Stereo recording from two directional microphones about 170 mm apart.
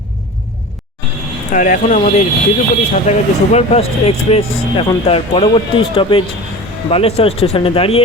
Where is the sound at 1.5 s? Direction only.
50° left (ahead or behind).